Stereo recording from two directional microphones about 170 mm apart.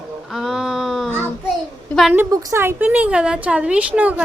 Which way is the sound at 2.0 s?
5° right (ahead or behind).